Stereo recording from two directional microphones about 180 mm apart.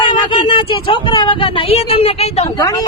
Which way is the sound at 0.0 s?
30° left (ahead or behind).